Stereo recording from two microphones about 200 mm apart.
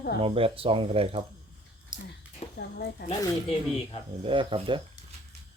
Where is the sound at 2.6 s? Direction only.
50° left (ahead or behind).